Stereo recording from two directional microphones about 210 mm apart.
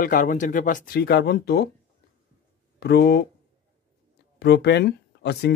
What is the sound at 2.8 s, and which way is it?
Speech, 50° left (ahead or behind).